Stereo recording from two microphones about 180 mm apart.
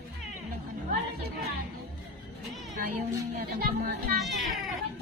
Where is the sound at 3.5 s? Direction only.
55° right (ahead or behind).